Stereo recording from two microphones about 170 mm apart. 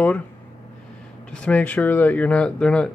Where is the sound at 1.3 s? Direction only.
5° left (ahead or behind).